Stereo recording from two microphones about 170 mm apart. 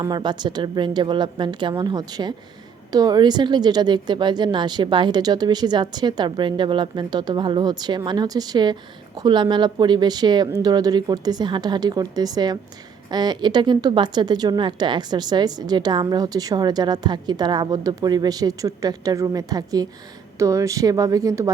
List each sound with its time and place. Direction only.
0.0 s a woman's voice: 25° right (ahead or behind)